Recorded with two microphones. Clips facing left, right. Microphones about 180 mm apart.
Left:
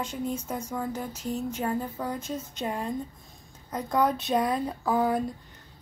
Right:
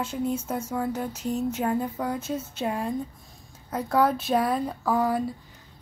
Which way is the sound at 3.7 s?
5° right (ahead or behind).